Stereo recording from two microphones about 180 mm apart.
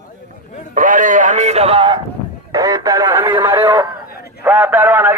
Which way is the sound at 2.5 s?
20° right (ahead or behind).